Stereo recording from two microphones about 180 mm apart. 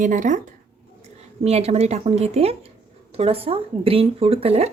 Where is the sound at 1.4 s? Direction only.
35° right (ahead or behind).